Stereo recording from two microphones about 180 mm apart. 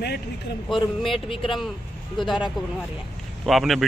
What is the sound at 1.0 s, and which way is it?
Speech, 30° left (ahead or behind).